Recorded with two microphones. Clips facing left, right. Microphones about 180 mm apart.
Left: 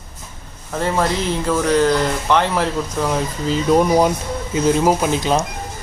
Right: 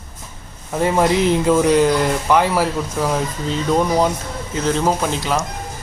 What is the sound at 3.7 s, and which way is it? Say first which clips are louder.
Speech: left 3 dB; 10° left (ahead or behind).